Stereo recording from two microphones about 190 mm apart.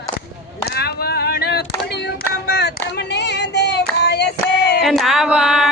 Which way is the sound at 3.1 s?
60° left (ahead or behind).